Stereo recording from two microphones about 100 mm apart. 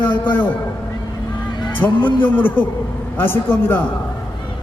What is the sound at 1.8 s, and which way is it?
A man's voice, 25° left (ahead or behind).